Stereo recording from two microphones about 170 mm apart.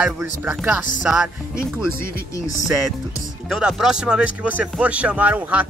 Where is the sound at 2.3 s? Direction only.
20° left (ahead or behind).